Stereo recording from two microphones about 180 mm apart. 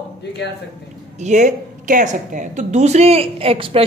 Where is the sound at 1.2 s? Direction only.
40° right (ahead or behind).